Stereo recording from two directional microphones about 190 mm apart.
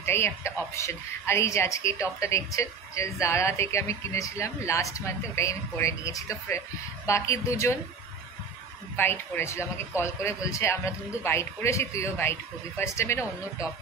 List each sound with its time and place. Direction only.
0.0 s a woman's voice: 15° left (ahead or behind)
8.9 s a woman's voice: 10° left (ahead or behind)